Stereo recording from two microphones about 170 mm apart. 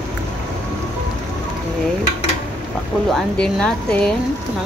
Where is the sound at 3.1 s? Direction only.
5° left (ahead or behind).